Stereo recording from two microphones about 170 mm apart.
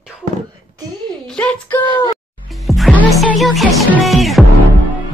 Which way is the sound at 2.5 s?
Centre (ahead or behind).